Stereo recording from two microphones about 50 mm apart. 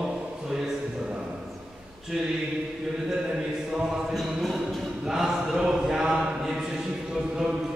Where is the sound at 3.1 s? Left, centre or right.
Centre.